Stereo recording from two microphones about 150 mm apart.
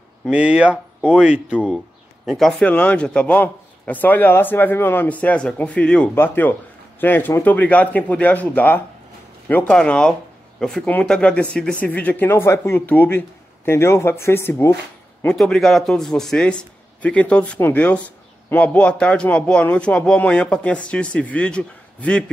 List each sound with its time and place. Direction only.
0.3 s a man's voice: 5° right (ahead or behind); by 14.8 s 15° left (ahead or behind)
15.2 s a man's voice: 5° left (ahead or behind)